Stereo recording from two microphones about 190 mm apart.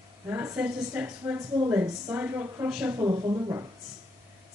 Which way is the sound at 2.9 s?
20° right (ahead or behind).